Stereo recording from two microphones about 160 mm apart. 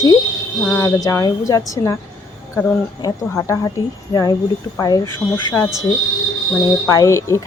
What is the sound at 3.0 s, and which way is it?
Speech, 20° left (ahead or behind).